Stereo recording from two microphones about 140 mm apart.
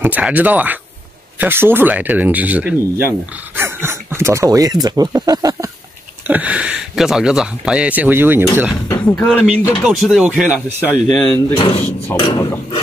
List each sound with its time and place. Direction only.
0.0 s speech: 10° right (ahead or behind); by 5.7 s 25° right (ahead or behind)
6.2 s speech: 10° right (ahead or behind)
8.8 s speech: 10° left (ahead or behind)
9.4 s speech: 5° right (ahead or behind)
10.9 s speech: 10° left (ahead or behind)
11.5 s filing: 35° left (ahead or behind)